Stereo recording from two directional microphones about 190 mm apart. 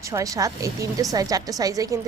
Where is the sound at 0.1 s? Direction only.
15° right (ahead or behind).